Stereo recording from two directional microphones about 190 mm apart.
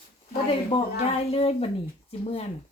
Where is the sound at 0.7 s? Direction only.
25° left (ahead or behind).